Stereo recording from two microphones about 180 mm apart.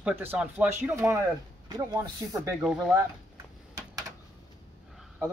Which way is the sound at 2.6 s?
Centre (ahead or behind).